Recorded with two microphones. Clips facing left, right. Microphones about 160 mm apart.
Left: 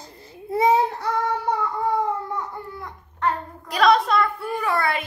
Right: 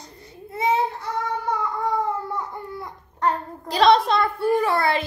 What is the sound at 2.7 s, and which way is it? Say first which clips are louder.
A child's voice: right 2 dB; 25° right (ahead or behind).